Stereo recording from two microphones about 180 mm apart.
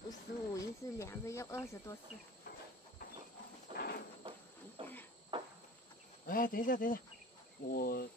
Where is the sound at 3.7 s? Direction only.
60° left (ahead or behind).